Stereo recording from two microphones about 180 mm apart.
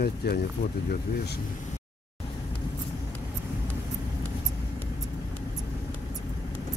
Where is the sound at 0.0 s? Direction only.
60° left (ahead or behind).